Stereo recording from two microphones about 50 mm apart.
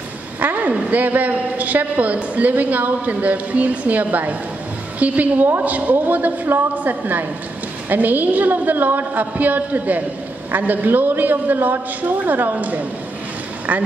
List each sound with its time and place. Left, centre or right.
0.4 s a woman's voice: right